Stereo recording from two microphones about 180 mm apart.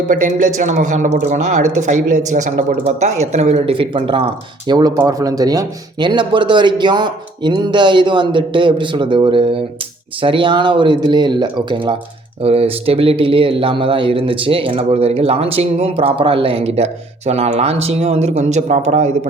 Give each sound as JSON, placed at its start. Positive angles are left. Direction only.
{"t": 0.1, "sound": "speech", "side_deg": -45}